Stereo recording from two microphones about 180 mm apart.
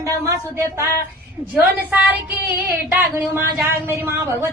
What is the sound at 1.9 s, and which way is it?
Speech, 10° right (ahead or behind).